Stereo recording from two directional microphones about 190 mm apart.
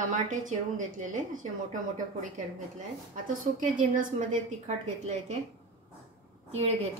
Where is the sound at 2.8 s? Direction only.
45° right (ahead or behind).